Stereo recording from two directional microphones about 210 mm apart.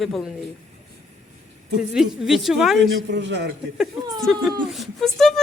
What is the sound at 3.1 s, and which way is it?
Speech, 55° right (ahead or behind).